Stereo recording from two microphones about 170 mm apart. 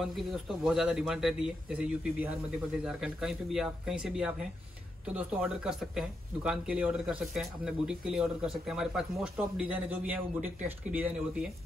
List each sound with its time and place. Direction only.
0.0 s speech: centre (ahead or behind)